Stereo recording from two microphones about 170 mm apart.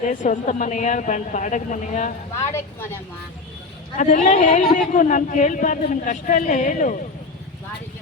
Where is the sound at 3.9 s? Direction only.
50° left (ahead or behind).